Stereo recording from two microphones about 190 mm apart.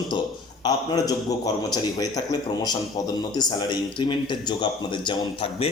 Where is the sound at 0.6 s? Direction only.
20° left (ahead or behind).